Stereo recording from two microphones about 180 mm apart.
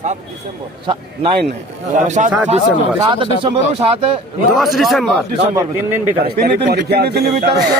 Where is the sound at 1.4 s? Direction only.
40° right (ahead or behind).